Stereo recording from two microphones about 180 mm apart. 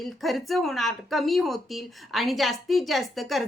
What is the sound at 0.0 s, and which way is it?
Speech, centre (ahead or behind).